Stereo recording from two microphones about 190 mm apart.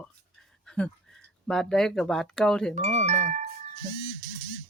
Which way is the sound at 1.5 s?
5° left (ahead or behind).